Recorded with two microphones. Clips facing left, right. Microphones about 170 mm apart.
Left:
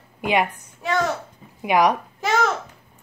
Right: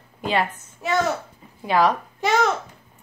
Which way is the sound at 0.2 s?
15° left (ahead or behind).